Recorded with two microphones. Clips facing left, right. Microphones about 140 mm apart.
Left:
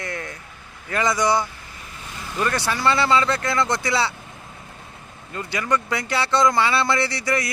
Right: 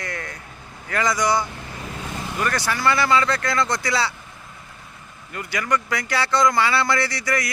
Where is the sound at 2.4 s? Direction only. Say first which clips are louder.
Left 1 dB; 25° left (ahead or behind).